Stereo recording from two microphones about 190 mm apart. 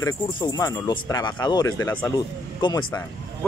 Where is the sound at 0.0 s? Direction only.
20° left (ahead or behind).